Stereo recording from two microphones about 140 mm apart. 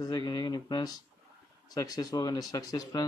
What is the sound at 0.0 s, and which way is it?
Speech, 25° left (ahead or behind).